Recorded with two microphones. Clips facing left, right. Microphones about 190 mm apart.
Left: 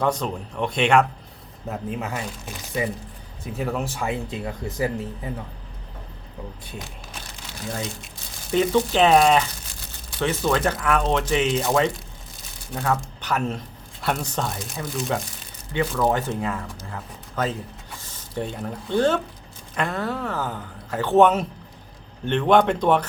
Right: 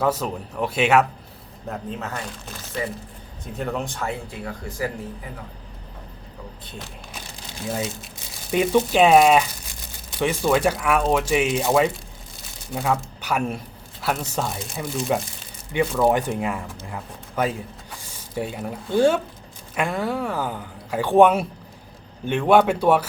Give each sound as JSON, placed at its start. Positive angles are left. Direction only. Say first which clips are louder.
{"t": 0.0, "sound": "speech", "louder": "right 1 dB", "side_deg": -5}
{"t": 3.4, "sound": "speech", "louder": "left 1 dB", "side_deg": 5}
{"t": 4.0, "sound": "speech", "louder": "left 2 dB", "side_deg": 20}
{"t": 8.5, "sound": "speech", "louder": "right 1 dB", "side_deg": -10}
{"t": 16.0, "sound": "speech", "louder": "right 3 dB", "side_deg": -15}